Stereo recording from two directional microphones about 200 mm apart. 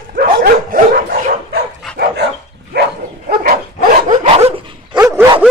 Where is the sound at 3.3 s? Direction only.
45° right (ahead or behind).